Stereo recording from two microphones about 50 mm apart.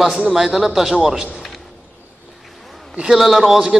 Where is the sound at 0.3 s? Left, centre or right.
Centre.